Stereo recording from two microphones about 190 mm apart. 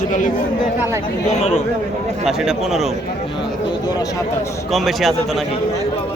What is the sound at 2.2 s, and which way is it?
Speech, centre (ahead or behind).